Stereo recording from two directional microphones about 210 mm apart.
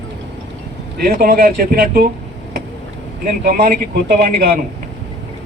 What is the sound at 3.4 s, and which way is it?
A man's voice, 40° right (ahead or behind).